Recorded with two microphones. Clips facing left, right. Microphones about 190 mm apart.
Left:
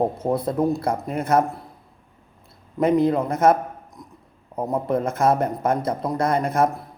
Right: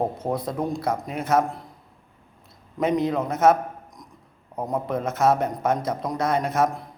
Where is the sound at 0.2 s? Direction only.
10° left (ahead or behind).